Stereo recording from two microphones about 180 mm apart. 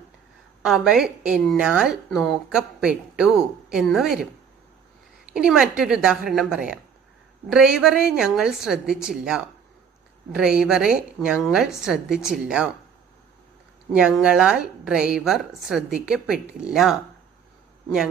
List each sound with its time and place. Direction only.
0.6 s speech: 5° right (ahead or behind)
5.3 s speech: 5° right (ahead or behind)
13.9 s speech: 5° right (ahead or behind)